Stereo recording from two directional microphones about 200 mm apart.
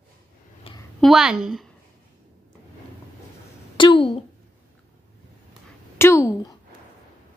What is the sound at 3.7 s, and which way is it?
Speech, 25° left (ahead or behind).